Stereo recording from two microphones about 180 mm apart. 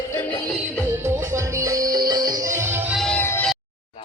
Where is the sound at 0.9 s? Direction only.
15° right (ahead or behind).